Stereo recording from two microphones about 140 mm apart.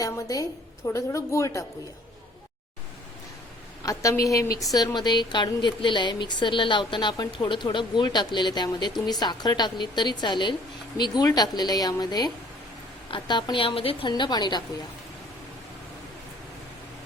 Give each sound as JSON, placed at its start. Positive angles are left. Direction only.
{"t": 0.0, "sound": "a woman's voice", "side_deg": 25}
{"t": 3.8, "sound": "a woman's voice", "side_deg": 25}